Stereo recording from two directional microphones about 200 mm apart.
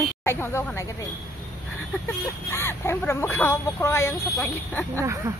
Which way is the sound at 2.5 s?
10° left (ahead or behind).